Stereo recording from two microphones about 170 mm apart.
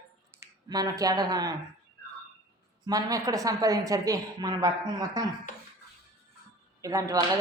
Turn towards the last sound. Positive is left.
turn(degrees=-20)  # may be behind; listen again after turning